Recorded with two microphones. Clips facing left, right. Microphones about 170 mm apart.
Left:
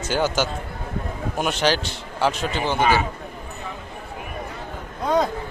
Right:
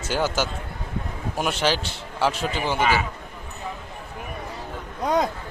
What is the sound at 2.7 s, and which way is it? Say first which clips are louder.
Speech: left 3 dB; 30° left (ahead or behind).